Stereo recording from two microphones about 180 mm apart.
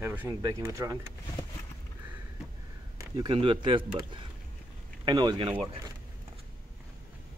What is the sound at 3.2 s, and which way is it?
Speech, 25° right (ahead or behind).